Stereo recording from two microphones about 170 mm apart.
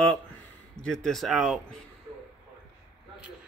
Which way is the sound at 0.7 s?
5° left (ahead or behind).